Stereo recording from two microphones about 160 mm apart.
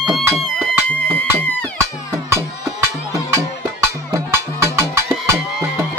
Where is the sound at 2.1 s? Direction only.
15° right (ahead or behind).